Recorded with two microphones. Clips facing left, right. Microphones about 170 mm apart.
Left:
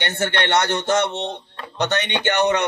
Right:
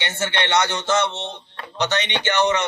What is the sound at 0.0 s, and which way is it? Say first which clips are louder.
A man's voice: left 2 dB; 60° left (ahead or behind).